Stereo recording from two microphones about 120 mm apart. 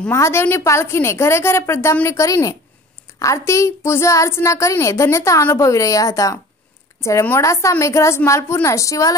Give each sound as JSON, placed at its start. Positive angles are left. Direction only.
{"t": 0.1, "sound": "a woman's voice", "side_deg": 20}